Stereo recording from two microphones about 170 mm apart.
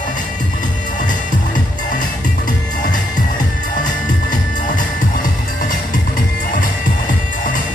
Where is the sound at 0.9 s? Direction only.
50° left (ahead or behind).